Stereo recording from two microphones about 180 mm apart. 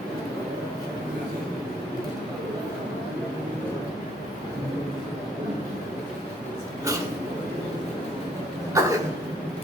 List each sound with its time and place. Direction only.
8.8 s cough: 15° right (ahead or behind)